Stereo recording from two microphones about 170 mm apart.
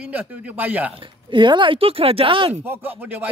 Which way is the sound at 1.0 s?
30° right (ahead or behind).